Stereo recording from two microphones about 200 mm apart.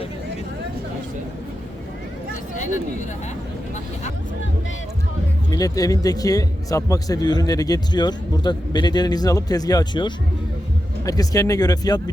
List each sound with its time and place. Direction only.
5.5 s speech: 15° left (ahead or behind)